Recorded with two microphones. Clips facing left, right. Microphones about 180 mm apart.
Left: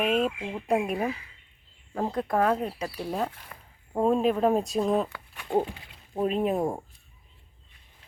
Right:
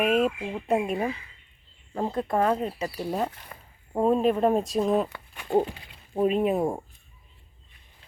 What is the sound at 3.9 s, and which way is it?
Speech, 5° right (ahead or behind).